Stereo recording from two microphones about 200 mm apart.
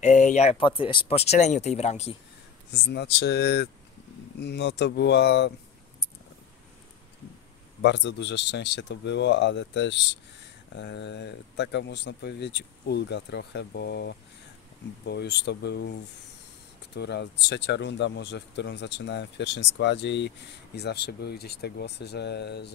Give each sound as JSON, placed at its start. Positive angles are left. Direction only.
{"t": 0.0, "sound": "speech", "side_deg": 35}
{"t": 2.7, "sound": "speech", "side_deg": 55}
{"t": 7.8, "sound": "speech", "side_deg": 60}